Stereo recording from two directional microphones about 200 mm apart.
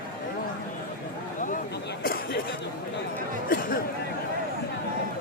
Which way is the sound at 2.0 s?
50° left (ahead or behind).